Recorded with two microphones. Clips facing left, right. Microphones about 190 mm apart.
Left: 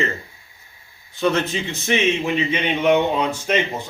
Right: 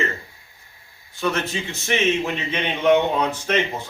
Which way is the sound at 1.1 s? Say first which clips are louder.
Left 4 dB; 20° left (ahead or behind).